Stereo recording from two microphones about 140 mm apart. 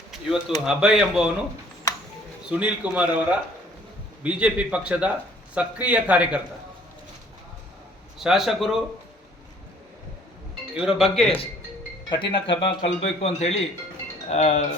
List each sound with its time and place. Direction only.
0.1 s speech: 5° right (ahead or behind)
2.5 s a man's voice: 10° right (ahead or behind)
8.2 s speech: centre (ahead or behind)
10.8 s speech: 5° right (ahead or behind)
12.1 s speech: 35° left (ahead or behind)
12.8 s a man's voice: 50° left (ahead or behind)